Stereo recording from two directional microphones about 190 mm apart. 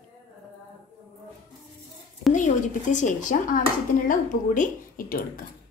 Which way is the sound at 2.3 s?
40° left (ahead or behind).